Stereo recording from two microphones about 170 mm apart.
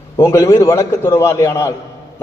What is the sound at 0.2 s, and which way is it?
A man's voice, 20° left (ahead or behind).